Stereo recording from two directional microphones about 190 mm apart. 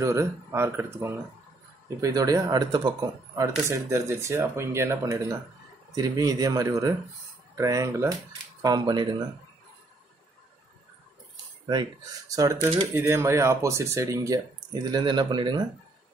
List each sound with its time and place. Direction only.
0.0 s speech: 15° right (ahead or behind)
11.6 s speech: 20° right (ahead or behind)